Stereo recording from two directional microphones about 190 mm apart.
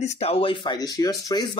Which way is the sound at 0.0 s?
30° left (ahead or behind).